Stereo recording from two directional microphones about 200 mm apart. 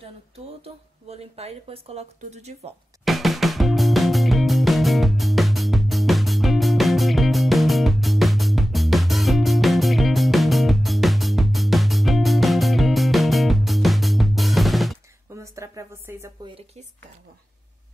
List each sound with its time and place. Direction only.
0.6 s speech: 30° right (ahead or behind)
3.1 s music: centre (ahead or behind)
15.2 s a sound: 15° right (ahead or behind)